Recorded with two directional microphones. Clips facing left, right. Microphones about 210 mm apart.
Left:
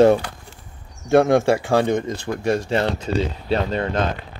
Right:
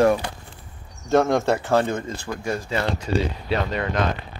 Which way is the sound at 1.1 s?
15° left (ahead or behind).